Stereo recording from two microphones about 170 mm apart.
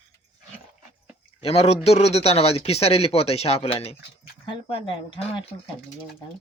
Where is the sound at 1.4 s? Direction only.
35° left (ahead or behind).